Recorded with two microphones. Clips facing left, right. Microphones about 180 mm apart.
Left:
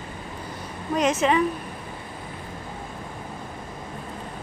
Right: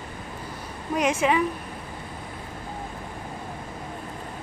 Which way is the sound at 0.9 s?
10° right (ahead or behind).